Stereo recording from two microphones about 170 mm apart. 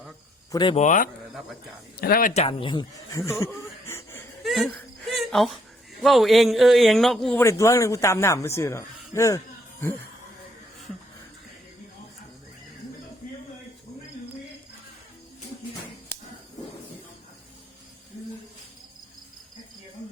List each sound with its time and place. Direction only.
0.5 s speech: 25° left (ahead or behind)
0.8 s speech: 50° left (ahead or behind)
2.0 s speech: 60° left (ahead or behind)
2.3 s speech: 35° left (ahead or behind); by 3.3 s 15° left (ahead or behind)
3.4 s wheeze: 15° left (ahead or behind)
4.4 s wheeze: centre (ahead or behind)
4.7 s wheeze: 10° left (ahead or behind)
5.1 s a sound: centre (ahead or behind)
6.0 s a man's voice: centre (ahead or behind)
7.3 s speech: 15° left (ahead or behind)